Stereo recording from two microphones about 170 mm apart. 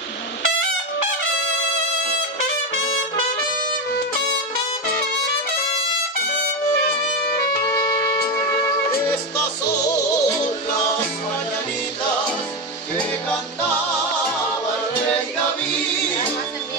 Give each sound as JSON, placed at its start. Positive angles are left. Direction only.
{"t": 7.7, "sound": "music", "side_deg": 25}
{"t": 9.8, "sound": "music", "side_deg": 20}
{"t": 13.3, "sound": "music", "side_deg": 10}